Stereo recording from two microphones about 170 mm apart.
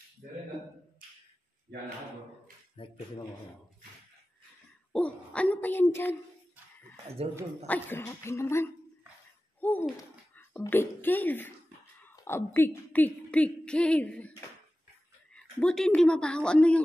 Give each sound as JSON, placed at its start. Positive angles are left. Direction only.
{"t": 0.2, "sound": "a man's voice", "side_deg": -65}
{"t": 2.8, "sound": "speech", "side_deg": 30}
{"t": 4.9, "sound": "dog", "side_deg": 5}
{"t": 7.2, "sound": "speech", "side_deg": -35}
{"t": 7.6, "sound": "a woman's voice", "side_deg": 10}
{"t": 15.3, "sound": "speech", "side_deg": 5}